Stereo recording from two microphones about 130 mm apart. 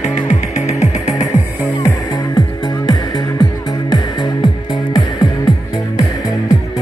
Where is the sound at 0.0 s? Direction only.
65° left (ahead or behind).